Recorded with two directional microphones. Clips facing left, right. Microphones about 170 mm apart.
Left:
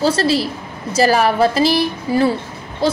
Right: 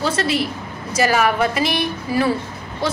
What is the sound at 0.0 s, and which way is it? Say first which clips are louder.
A woman's voice: left 4 dB; 30° left (ahead or behind).